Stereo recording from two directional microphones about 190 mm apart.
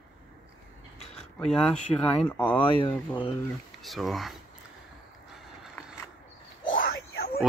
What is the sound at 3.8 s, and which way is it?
Speech, centre (ahead or behind).